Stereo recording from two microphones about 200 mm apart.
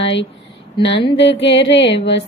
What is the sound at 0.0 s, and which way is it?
Speech, 65° left (ahead or behind).